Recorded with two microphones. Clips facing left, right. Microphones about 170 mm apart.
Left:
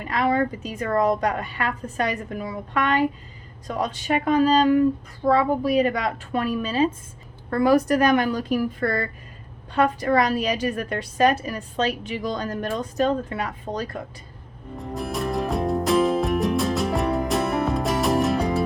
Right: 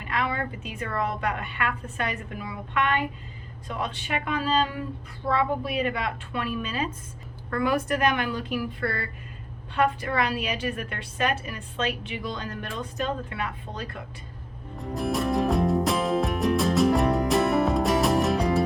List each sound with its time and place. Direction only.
0.0 s a woman's voice: 40° left (ahead or behind)
14.8 s music: centre (ahead or behind)